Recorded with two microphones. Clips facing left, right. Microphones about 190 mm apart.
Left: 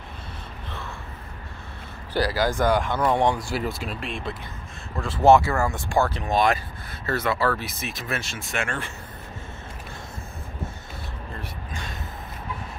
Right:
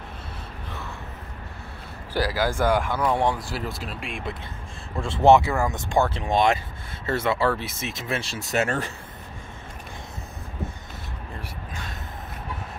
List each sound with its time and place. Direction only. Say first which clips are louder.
2.1 s speech: left 1 dB; 10° right (ahead or behind)
5.2 s speech: even; 20° right (ahead or behind); by 8.9 s 40° right (ahead or behind)